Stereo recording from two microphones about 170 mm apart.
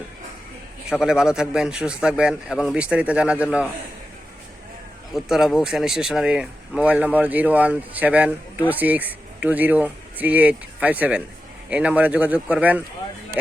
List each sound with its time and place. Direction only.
0.9 s a man's voice: 5° right (ahead or behind)
5.1 s speech: centre (ahead or behind)